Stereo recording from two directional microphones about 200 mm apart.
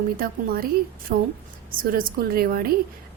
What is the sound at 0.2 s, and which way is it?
A woman's voice, 45° right (ahead or behind).